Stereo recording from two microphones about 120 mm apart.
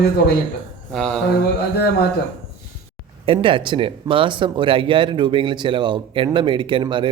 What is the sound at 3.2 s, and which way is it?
Speech, 45° right (ahead or behind).